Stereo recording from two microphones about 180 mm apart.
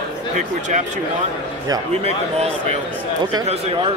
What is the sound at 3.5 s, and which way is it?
Speech, 35° right (ahead or behind).